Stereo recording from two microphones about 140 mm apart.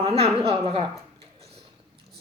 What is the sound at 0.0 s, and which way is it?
Speech, 45° right (ahead or behind).